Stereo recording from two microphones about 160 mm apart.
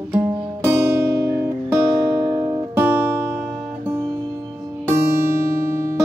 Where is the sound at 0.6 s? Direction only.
15° right (ahead or behind).